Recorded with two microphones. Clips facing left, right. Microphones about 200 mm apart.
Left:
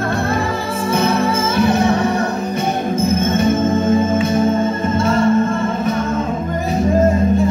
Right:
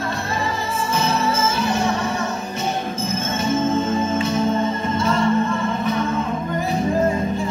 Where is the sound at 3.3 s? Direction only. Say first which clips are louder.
Left 1 dB; 55° left (ahead or behind).